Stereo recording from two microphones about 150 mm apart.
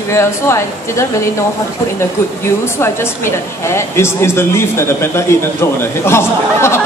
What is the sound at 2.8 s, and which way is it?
A woman's voice, 15° left (ahead or behind).